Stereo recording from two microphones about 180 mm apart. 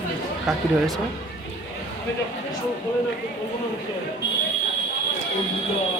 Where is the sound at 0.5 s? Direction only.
Centre (ahead or behind).